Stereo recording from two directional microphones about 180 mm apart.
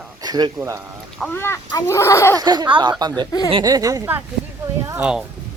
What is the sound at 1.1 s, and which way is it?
Speech, 10° left (ahead or behind).